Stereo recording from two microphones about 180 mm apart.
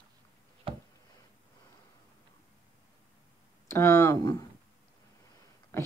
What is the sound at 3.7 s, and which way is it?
Speech, 10° left (ahead or behind).